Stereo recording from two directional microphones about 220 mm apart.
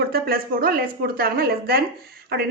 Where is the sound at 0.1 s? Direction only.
45° right (ahead or behind).